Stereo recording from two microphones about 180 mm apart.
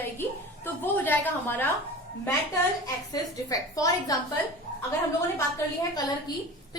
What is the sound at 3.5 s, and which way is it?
Speech, 20° left (ahead or behind).